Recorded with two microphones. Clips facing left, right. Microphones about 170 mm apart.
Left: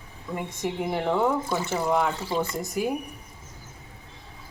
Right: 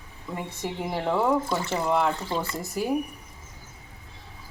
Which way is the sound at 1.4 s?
5° left (ahead or behind).